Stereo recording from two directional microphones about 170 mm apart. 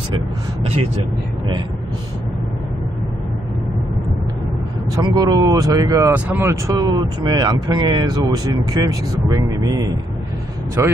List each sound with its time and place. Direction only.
4.9 s speech: 25° right (ahead or behind)
6.1 s speech: 10° right (ahead or behind)